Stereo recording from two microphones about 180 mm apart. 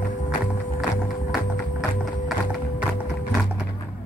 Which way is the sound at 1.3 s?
Centre (ahead or behind).